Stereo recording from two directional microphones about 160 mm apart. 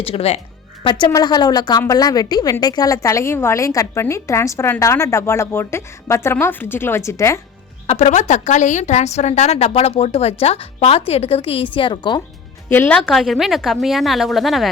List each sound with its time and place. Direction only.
0.0 s a woman's voice: 40° left (ahead or behind); by 7.4 s 15° left (ahead or behind)
7.9 s a woman's voice: 45° left (ahead or behind)
12.6 s a woman's voice: 15° left (ahead or behind)
13.0 s a woman's voice: centre (ahead or behind)